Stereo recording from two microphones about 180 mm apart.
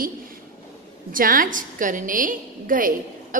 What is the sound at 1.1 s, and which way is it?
A woman's voice, 50° right (ahead or behind).